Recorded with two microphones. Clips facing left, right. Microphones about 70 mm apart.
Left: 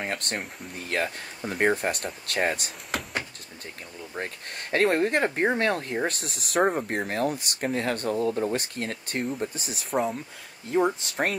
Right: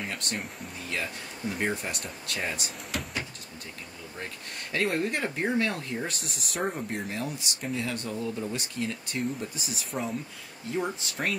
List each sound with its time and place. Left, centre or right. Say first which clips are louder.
0.0 s speech: left 3 dB; left
6.2 s speech: left 8 dB; left